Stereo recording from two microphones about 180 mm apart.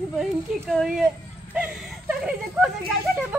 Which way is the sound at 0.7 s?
Centre (ahead or behind).